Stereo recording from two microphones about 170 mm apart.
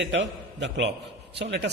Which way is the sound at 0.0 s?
90° right.